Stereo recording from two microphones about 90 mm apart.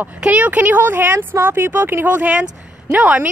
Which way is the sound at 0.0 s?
15° right (ahead or behind).